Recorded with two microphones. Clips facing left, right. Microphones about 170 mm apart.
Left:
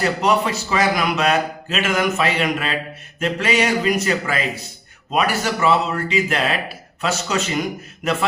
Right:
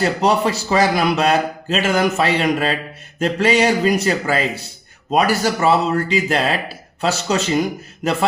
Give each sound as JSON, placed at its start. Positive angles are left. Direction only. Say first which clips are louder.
{"t": 0.0, "sound": "a man's voice", "louder": "right 2 dB", "side_deg": -35}